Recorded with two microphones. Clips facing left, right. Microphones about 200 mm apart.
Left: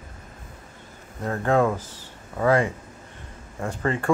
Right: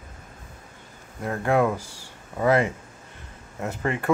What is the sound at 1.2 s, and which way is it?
Speech, 10° right (ahead or behind).